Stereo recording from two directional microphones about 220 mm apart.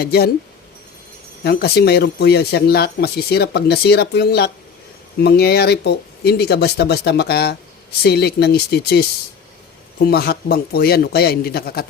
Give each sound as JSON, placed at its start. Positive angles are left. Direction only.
{"t": 0.0, "sound": "speech", "side_deg": 45}
{"t": 1.5, "sound": "speech", "side_deg": 45}